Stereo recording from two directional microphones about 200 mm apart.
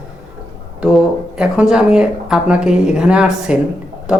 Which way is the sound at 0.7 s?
5° right (ahead or behind).